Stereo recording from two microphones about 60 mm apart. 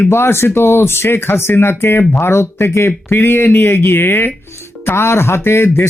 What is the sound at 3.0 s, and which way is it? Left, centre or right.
A man's voice, left.